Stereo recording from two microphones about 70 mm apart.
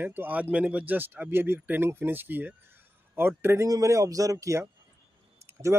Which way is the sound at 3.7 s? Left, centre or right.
Right.